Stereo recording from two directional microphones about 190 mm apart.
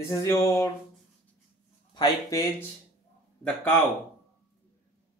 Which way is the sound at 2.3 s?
15° left (ahead or behind).